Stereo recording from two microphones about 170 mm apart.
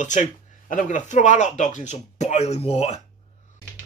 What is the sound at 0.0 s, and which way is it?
Speech, 45° left (ahead or behind).